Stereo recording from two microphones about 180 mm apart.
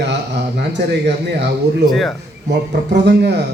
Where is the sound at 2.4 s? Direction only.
70° right (ahead or behind).